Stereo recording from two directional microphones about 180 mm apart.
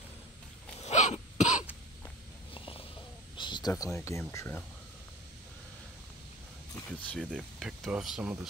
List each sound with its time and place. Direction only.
0.7 s throat clearing: 40° left (ahead or behind)
2.5 s a sound: 30° left (ahead or behind)
3.3 s speech: 25° left (ahead or behind)
7.1 s speech: 5° left (ahead or behind)